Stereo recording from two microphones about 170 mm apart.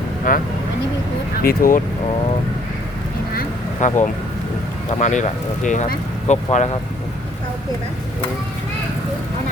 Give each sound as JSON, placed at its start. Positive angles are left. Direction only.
{"t": 0.3, "sound": "speech", "side_deg": 55}
{"t": 3.3, "sound": "a sound", "side_deg": 45}
{"t": 4.9, "sound": "speech", "side_deg": 45}